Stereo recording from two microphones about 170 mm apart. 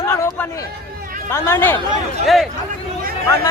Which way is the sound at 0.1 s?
15° left (ahead or behind).